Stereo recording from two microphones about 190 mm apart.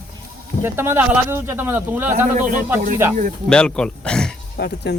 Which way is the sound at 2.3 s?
45° right (ahead or behind).